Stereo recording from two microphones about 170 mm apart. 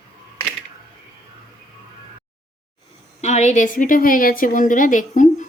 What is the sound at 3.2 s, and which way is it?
A woman's voice, 40° left (ahead or behind).